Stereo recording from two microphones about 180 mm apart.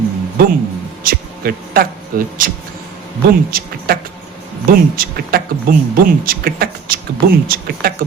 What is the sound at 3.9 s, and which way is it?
Speech, 55° right (ahead or behind).